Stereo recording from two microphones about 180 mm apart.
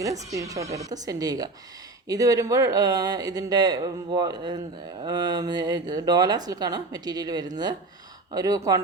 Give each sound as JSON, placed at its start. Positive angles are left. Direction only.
{"t": 0.3, "sound": "speech", "side_deg": -20}